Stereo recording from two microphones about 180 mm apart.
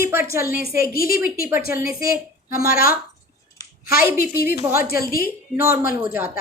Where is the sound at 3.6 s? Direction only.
20° left (ahead or behind).